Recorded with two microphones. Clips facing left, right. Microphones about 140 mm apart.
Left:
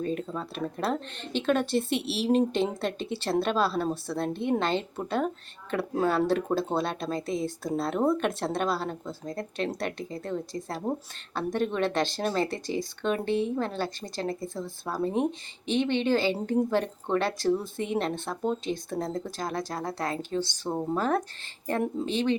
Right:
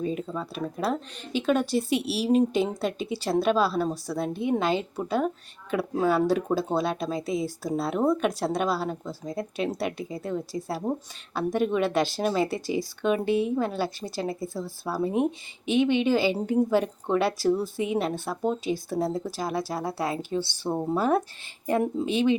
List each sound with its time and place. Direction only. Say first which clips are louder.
0.0 s a woman's voice: right 1 dB; 5° right (ahead or behind)